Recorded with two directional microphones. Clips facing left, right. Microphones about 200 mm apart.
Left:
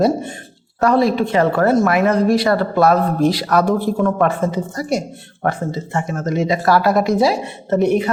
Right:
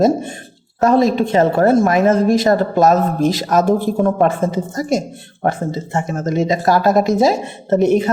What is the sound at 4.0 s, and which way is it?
Speech, 30° right (ahead or behind).